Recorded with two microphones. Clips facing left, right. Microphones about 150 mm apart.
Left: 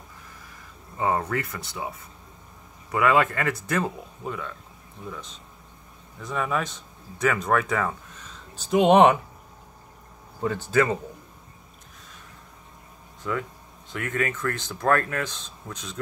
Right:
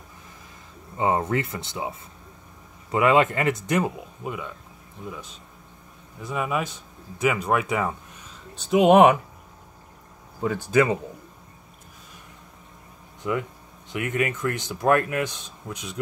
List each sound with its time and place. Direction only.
0.9 s speech: 20° right (ahead or behind)
8.5 s speech: 5° right (ahead or behind)
10.4 s speech: 10° right (ahead or behind)
13.2 s speech: 15° right (ahead or behind)